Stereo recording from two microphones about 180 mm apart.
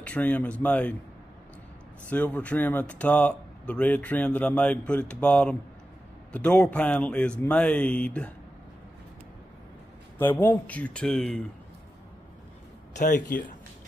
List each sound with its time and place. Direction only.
0.0 s speech: 10° left (ahead or behind)
2.0 s speech: 10° left (ahead or behind)
10.1 s speech: 10° left (ahead or behind)
12.9 s speech: 45° left (ahead or behind)